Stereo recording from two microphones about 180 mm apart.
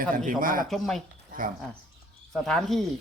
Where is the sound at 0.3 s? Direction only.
50° right (ahead or behind).